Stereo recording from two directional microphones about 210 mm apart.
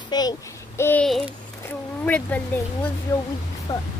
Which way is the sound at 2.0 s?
10° left (ahead or behind).